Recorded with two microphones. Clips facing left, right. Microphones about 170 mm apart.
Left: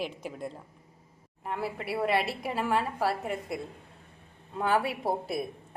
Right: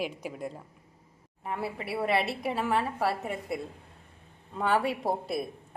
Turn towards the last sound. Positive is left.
turn(degrees=0)  # may be behind; listen again after turning